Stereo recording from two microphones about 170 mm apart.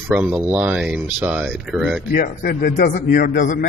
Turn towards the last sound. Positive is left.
turn(degrees=50)  # may be behind; listen again after turning